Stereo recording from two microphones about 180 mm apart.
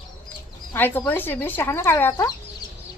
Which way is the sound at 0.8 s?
10° left (ahead or behind).